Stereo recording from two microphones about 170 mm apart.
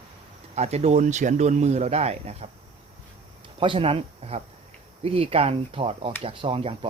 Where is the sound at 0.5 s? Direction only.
40° right (ahead or behind).